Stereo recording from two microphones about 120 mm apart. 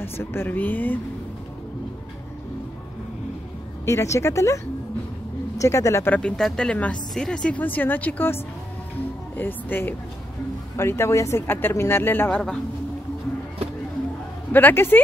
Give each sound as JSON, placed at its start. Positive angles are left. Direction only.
{"t": 0.0, "sound": "speech", "side_deg": 20}
{"t": 3.8, "sound": "speech", "side_deg": 25}
{"t": 5.6, "sound": "speech", "side_deg": 25}
{"t": 9.4, "sound": "speech", "side_deg": 15}
{"t": 14.5, "sound": "speech", "side_deg": 15}